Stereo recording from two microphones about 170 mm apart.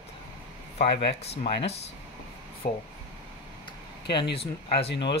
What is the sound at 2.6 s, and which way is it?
Speech, 55° left (ahead or behind).